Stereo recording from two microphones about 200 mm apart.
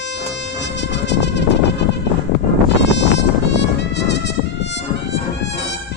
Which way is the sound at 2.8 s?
60° left (ahead or behind).